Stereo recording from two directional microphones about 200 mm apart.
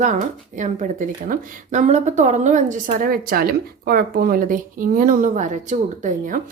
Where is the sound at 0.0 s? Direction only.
40° right (ahead or behind).